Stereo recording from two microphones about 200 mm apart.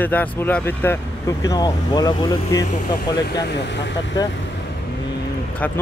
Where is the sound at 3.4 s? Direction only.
60° left (ahead or behind).